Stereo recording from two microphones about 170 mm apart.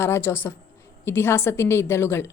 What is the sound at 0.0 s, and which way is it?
A woman's voice, 15° left (ahead or behind).